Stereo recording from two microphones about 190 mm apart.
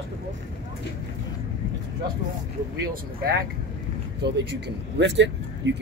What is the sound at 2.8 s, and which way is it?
Speech, 55° right (ahead or behind).